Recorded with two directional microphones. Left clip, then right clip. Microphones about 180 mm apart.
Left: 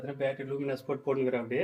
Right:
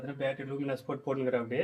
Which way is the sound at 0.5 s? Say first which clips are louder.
Left 2 dB; 15° right (ahead or behind).